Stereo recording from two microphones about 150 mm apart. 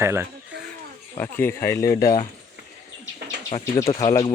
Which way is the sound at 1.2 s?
15° left (ahead or behind).